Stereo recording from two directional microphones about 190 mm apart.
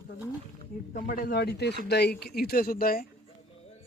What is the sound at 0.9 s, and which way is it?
Speech, 45° left (ahead or behind).